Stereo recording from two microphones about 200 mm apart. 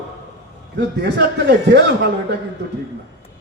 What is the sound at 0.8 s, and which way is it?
A man's voice, 60° right (ahead or behind).